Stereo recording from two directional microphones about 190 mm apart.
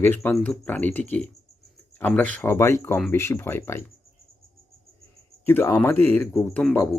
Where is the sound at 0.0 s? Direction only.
10° left (ahead or behind).